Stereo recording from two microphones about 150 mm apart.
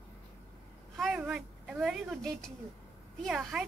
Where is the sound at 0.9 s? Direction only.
5° right (ahead or behind).